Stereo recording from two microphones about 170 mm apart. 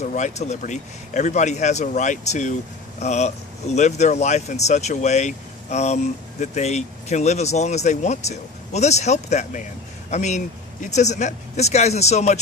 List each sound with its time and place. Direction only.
0.1 s a man's voice: 45° left (ahead or behind)